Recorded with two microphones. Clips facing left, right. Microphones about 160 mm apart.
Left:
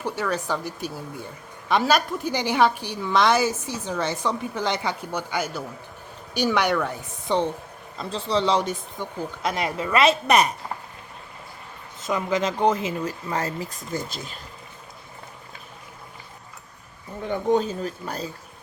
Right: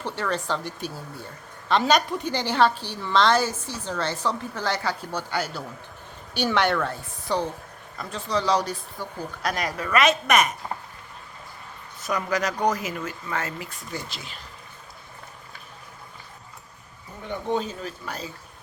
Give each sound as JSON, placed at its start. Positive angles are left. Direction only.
{"t": 0.0, "sound": "a woman's voice", "side_deg": 10}
{"t": 11.9, "sound": "speech", "side_deg": 25}
{"t": 17.5, "sound": "speech", "side_deg": 40}